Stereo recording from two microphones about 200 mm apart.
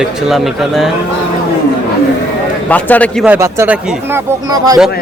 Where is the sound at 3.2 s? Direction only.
10° right (ahead or behind).